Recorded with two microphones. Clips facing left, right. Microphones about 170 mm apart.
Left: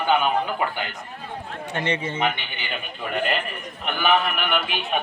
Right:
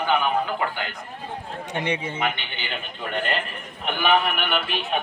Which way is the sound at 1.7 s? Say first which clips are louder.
Left 1 dB; 15° right (ahead or behind).